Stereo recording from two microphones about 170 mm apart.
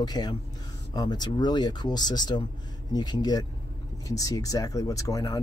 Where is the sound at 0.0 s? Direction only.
25° left (ahead or behind).